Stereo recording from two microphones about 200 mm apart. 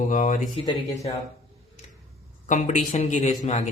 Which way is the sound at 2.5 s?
40° left (ahead or behind).